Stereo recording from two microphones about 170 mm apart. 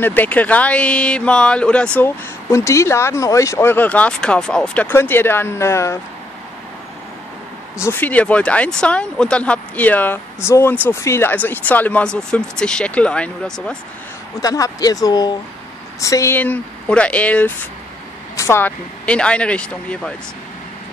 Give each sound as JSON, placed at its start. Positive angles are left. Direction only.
{"t": 0.0, "sound": "speech", "side_deg": 10}
{"t": 7.7, "sound": "speech", "side_deg": 15}
{"t": 14.4, "sound": "speech", "side_deg": 20}